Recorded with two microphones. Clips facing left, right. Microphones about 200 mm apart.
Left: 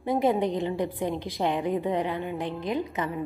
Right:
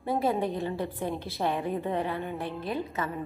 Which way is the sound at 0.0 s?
20° left (ahead or behind).